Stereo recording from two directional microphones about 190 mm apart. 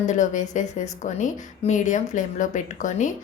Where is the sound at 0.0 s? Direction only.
40° left (ahead or behind).